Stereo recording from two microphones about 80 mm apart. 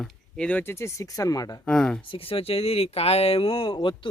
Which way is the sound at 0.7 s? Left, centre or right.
Left.